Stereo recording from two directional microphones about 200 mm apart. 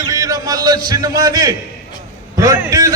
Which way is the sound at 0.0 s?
15° right (ahead or behind).